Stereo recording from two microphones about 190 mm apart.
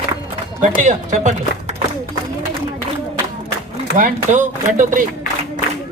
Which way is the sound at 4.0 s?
40° right (ahead or behind).